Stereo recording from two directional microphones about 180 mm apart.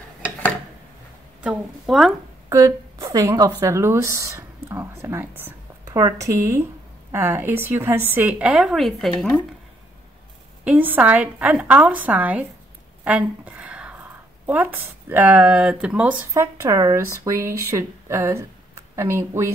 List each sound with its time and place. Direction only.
1.4 s a woman's voice: 5° right (ahead or behind)
2.5 s a woman's voice: 20° right (ahead or behind); by 9.1 s centre (ahead or behind)
10.6 s speech: 10° right (ahead or behind)
13.0 s a sound: 10° right (ahead or behind)
14.4 s speech: 10° right (ahead or behind)